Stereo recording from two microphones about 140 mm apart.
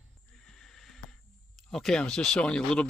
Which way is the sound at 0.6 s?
Centre (ahead or behind).